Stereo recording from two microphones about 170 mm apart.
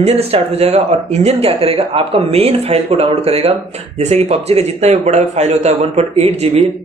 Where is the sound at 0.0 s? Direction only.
40° right (ahead or behind).